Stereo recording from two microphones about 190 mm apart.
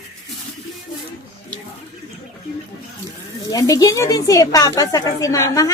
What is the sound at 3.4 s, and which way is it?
Speech, 20° left (ahead or behind).